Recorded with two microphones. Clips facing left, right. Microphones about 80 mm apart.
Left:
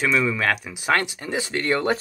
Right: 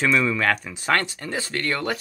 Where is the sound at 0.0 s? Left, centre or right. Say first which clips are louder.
Right 1 dB; centre.